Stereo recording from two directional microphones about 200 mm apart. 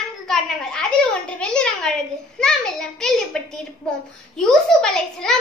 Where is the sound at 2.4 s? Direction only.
5° left (ahead or behind).